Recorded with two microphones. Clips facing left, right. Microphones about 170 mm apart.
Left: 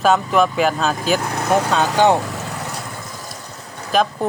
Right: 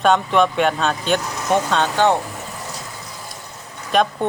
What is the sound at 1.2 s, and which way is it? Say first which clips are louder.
Vehicle: left 5 dB; 55° left (ahead or behind).